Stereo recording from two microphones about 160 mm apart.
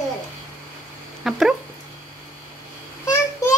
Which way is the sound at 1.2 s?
Centre (ahead or behind).